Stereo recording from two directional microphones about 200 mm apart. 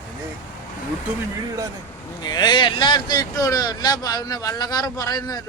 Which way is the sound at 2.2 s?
20° left (ahead or behind).